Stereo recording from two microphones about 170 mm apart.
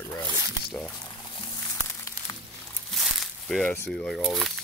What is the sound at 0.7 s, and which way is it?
Speech, centre (ahead or behind).